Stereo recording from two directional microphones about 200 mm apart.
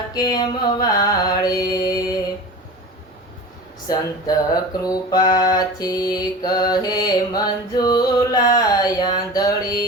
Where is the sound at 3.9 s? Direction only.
20° left (ahead or behind).